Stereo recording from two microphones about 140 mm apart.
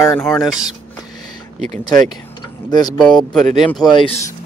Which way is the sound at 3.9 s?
40° left (ahead or behind).